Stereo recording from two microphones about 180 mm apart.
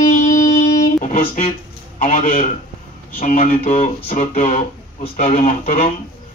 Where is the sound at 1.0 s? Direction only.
45° left (ahead or behind).